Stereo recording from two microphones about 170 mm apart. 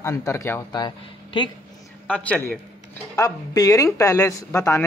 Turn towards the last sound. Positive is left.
turn(degrees=20)  # may be behind; listen again after turning